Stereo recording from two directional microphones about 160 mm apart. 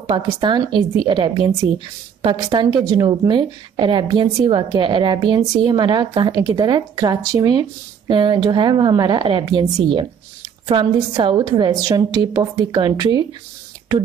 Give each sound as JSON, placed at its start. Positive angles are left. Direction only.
{"t": 0.0, "sound": "a woman's voice", "side_deg": -25}